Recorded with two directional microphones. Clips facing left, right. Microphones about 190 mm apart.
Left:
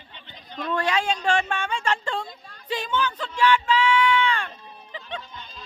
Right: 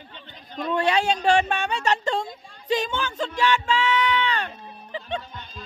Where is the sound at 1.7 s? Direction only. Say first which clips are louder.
Right 3 dB; 40° right (ahead or behind).